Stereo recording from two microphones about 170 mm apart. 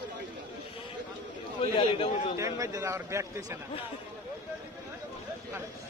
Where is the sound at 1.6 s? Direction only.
35° left (ahead or behind).